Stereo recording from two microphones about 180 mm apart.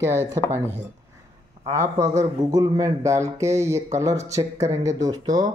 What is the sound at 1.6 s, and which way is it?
Speech, 15° right (ahead or behind).